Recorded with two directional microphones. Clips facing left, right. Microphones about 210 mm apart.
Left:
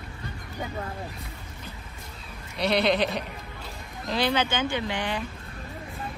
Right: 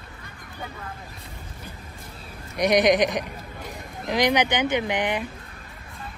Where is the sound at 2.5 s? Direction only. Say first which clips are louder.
Right 5 dB; 15° right (ahead or behind).